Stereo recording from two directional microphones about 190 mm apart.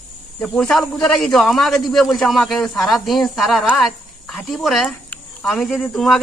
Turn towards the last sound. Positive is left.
turn(degrees=0)  # may be behind; listen again after turning